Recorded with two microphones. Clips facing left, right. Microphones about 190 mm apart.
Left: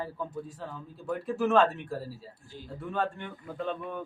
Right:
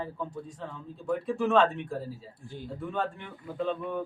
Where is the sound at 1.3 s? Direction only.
5° left (ahead or behind).